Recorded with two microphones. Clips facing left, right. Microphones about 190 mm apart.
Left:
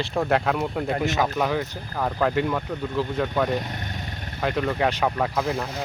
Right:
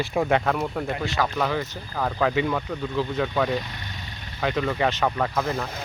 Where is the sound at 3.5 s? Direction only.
50° left (ahead or behind).